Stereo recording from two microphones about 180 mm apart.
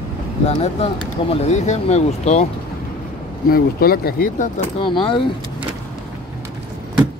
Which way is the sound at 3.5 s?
55° left (ahead or behind).